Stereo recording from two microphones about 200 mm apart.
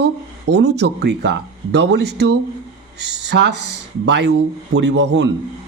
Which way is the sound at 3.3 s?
60° right (ahead or behind).